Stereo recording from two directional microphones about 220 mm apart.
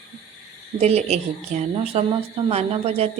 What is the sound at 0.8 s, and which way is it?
Speech, 30° right (ahead or behind).